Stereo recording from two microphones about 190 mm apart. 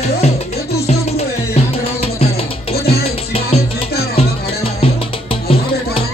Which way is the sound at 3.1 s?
30° left (ahead or behind).